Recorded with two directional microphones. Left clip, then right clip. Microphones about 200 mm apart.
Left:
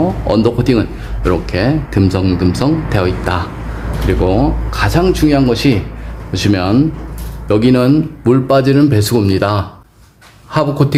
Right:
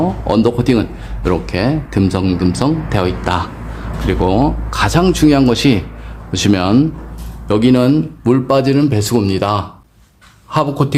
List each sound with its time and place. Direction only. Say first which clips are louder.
0.0 s speech: left 1 dB; 10° right (ahead or behind)